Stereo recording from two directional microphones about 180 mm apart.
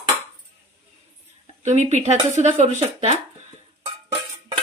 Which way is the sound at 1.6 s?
40° right (ahead or behind).